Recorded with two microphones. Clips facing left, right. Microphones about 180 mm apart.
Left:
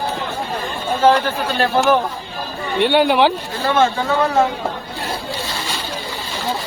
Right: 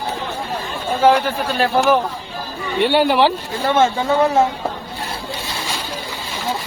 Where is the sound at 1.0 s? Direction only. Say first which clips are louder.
Even; 10° right (ahead or behind).